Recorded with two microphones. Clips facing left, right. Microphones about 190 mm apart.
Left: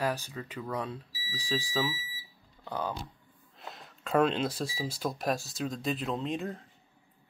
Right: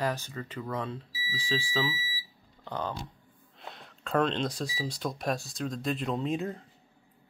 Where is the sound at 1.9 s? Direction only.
5° right (ahead or behind).